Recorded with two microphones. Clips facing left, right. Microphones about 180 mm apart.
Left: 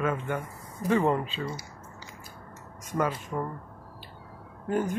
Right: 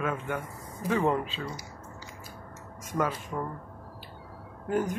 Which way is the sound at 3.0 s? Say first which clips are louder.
Left 1 dB; centre (ahead or behind).